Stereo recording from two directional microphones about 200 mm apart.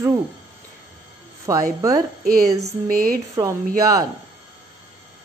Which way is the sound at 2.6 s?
45° right (ahead or behind).